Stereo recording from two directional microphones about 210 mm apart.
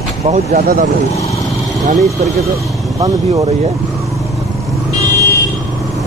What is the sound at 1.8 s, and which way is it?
Speech, 35° right (ahead or behind).